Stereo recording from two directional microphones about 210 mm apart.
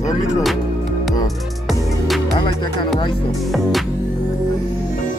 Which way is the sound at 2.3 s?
20° left (ahead or behind).